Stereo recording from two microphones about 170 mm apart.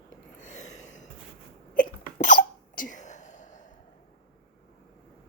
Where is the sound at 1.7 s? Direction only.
50° left (ahead or behind).